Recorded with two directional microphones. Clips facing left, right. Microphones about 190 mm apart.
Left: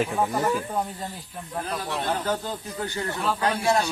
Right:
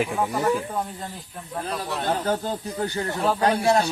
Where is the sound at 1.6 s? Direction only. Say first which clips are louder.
Right 2 dB; 35° right (ahead or behind).